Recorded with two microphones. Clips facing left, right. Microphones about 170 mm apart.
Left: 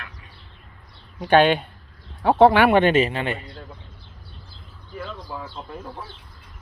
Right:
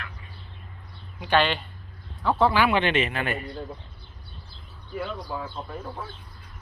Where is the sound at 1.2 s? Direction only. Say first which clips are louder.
Left 7 dB; 50° left (ahead or behind); by 3.5 s 25° left (ahead or behind).